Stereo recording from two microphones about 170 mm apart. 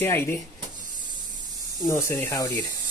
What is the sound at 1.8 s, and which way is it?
Speech, 15° left (ahead or behind).